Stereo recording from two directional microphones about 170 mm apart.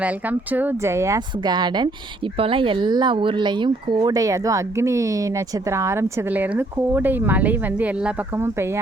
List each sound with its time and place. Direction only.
0.0 s a woman's voice: 10° right (ahead or behind)